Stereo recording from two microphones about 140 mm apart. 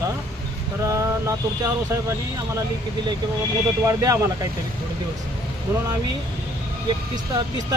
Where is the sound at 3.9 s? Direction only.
20° right (ahead or behind).